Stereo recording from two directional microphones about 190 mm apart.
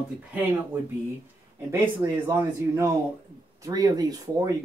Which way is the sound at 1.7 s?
10° right (ahead or behind).